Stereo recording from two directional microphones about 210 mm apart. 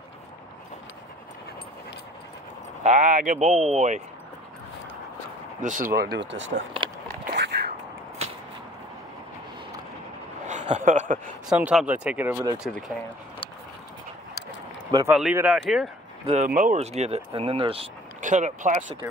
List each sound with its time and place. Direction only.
2.8 s speech: 35° right (ahead or behind)
5.6 s speech: 35° right (ahead or behind)
5.9 s speech: 55° right (ahead or behind)
7.3 s a sound: 50° right (ahead or behind)
10.4 s a sound: 35° right (ahead or behind)
11.4 s speech: 5° right (ahead or behind)
12.5 s speech: centre (ahead or behind)
15.0 s speech: 5° right (ahead or behind)
16.3 s speech: 35° right (ahead or behind)